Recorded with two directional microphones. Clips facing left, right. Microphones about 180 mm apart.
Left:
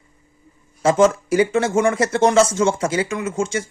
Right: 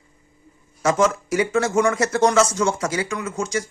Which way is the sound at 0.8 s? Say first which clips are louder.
Left 4 dB; 30° left (ahead or behind).